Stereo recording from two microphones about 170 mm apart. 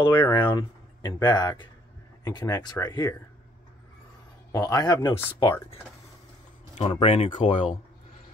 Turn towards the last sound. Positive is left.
turn(degrees=35)  # may be behind; listen again after turning